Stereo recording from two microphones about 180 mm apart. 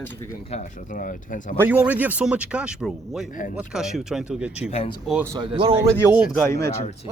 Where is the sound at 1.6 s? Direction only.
10° right (ahead or behind).